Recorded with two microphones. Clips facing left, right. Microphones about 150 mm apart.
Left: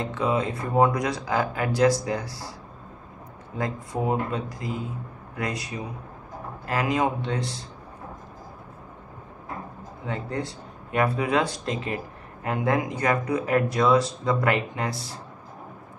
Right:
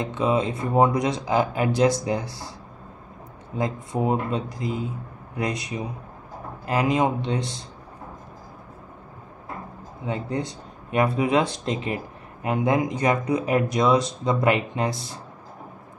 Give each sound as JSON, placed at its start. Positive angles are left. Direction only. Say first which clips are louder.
{"t": 0.0, "sound": "speech", "louder": "right 2 dB", "side_deg": -20}
{"t": 3.5, "sound": "speech", "louder": "right 3 dB", "side_deg": -20}
{"t": 10.0, "sound": "speech", "louder": "right 3 dB", "side_deg": -20}